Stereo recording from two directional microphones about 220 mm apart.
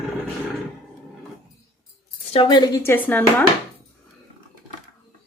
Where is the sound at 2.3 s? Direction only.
25° left (ahead or behind); by 3.2 s 10° left (ahead or behind).